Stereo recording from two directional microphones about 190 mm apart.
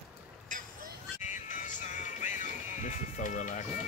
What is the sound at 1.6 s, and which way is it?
Music, 40° left (ahead or behind).